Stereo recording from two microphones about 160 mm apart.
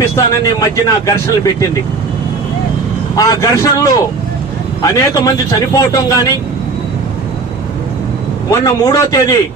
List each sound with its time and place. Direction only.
0.4 s speech: 20° left (ahead or behind)
3.2 s speech: 20° left (ahead or behind)
8.5 s speech: 20° left (ahead or behind)